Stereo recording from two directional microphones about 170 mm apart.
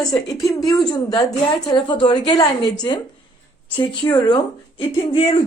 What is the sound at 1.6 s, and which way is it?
Speech, 25° left (ahead or behind).